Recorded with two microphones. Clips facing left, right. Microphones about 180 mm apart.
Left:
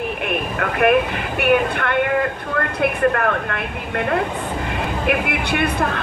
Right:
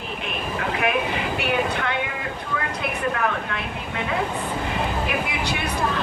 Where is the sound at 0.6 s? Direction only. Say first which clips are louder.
Left 7 dB; 55° left (ahead or behind).